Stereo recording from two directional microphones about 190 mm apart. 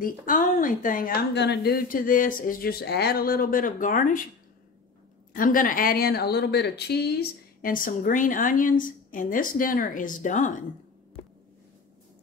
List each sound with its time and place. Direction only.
0.0 s a woman's voice: 45° left (ahead or behind)
5.3 s a woman's voice: 45° left (ahead or behind)